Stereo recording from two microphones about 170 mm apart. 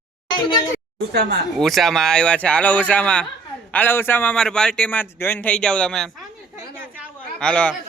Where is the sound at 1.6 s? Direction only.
Centre (ahead or behind).